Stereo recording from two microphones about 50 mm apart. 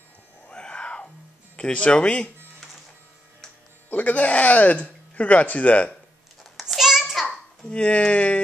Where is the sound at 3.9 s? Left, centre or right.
Left.